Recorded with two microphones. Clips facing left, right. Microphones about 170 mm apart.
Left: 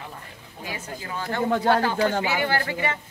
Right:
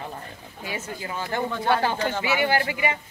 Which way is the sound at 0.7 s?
20° right (ahead or behind).